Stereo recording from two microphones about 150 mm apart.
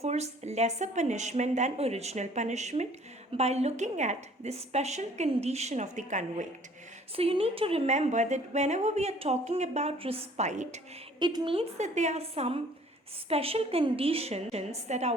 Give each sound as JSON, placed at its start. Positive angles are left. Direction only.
{"t": 0.0, "sound": "a woman's voice", "side_deg": -45}
{"t": 7.2, "sound": "a woman's voice", "side_deg": -40}
{"t": 11.2, "sound": "a woman's voice", "side_deg": -30}
{"t": 11.8, "sound": "a woman's voice", "side_deg": -50}